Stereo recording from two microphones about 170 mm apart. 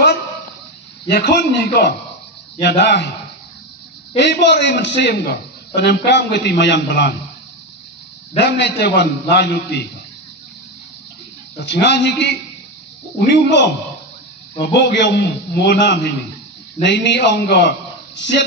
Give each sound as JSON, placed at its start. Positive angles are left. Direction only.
{"t": 1.1, "sound": "a man's voice", "side_deg": 70}
{"t": 2.6, "sound": "a man's voice", "side_deg": 85}
{"t": 4.2, "sound": "a man's voice", "side_deg": 90}
{"t": 5.8, "sound": "a man's voice", "side_deg": 90}
{"t": 8.4, "sound": "a man's voice", "side_deg": 85}
{"t": 11.6, "sound": "a man's voice", "side_deg": 90}
{"t": 14.6, "sound": "a man's voice", "side_deg": 80}